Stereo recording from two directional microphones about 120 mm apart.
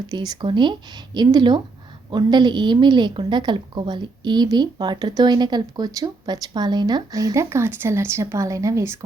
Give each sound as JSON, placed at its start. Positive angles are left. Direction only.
{"t": 0.1, "sound": "a woman's voice", "side_deg": -35}